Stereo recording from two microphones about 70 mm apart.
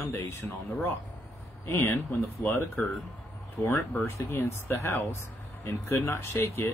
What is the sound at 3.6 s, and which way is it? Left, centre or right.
Speech, left.